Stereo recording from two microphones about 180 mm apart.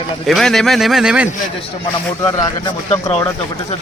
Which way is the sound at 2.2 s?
20° left (ahead or behind).